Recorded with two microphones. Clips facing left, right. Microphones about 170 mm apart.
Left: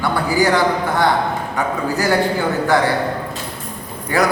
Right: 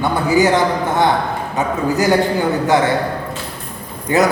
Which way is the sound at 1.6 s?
20° right (ahead or behind).